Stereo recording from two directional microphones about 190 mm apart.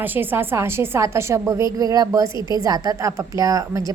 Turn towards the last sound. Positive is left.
turn(degrees=-20)  # may be behind; listen again after turning